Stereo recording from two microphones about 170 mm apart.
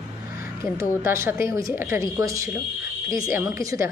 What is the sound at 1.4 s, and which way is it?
A woman's voice, 20° right (ahead or behind).